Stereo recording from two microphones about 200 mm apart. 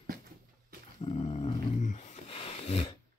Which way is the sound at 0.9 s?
30° left (ahead or behind).